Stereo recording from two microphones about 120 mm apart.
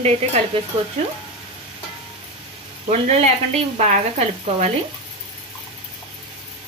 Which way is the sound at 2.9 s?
65° right (ahead or behind).